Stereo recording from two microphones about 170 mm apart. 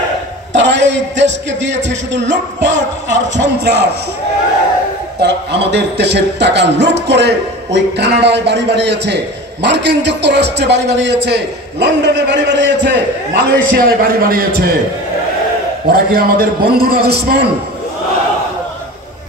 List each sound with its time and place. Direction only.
0.6 s a man's voice: 90° right
5.2 s a man's voice: 85° right
13.3 s a man's voice: 75° right (ahead or behind); by 14.8 s 60° right (ahead or behind)
15.9 s a man's voice: 60° right (ahead or behind)